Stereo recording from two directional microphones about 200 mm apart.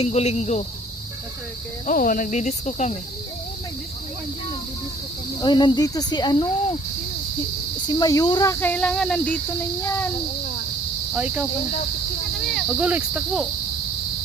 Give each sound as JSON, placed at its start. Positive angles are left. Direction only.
{"t": 0.0, "sound": "cricket", "side_deg": 35}
{"t": 1.9, "sound": "cricket", "side_deg": 45}
{"t": 5.4, "sound": "speech", "side_deg": 20}
{"t": 7.9, "sound": "speech", "side_deg": 20}
{"t": 11.1, "sound": "cricket", "side_deg": -5}
{"t": 12.5, "sound": "cricket", "side_deg": -5}